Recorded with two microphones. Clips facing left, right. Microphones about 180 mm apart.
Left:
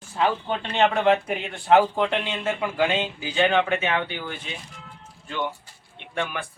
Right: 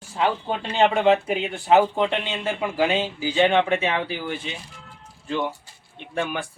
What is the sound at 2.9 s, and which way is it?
Speech, 30° right (ahead or behind).